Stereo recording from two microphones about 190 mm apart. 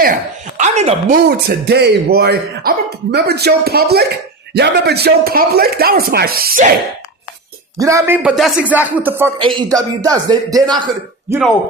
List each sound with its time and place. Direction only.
0.0 s speech: 45° right (ahead or behind)
1.3 s speech: 60° right (ahead or behind)
7.8 s a man's voice: 15° right (ahead or behind)